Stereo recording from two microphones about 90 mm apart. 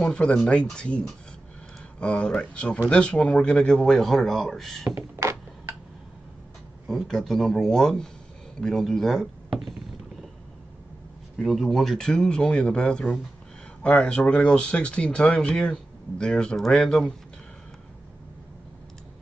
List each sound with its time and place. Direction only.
0.0 s speech: 10° left (ahead or behind)
4.8 s door: 30° right (ahead or behind)
6.9 s speech: centre (ahead or behind)
11.3 s speech: centre (ahead or behind)